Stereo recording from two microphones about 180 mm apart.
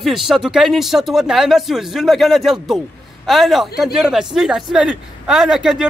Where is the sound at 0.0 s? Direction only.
Centre (ahead or behind).